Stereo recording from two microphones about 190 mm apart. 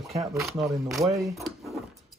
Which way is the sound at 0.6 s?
15° right (ahead or behind).